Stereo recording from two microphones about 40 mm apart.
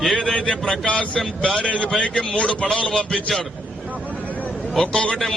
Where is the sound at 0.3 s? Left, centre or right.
Left.